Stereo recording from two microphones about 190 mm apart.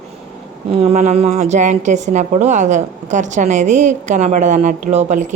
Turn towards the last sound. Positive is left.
turn(degrees=-35)  # may be behind; listen again after turning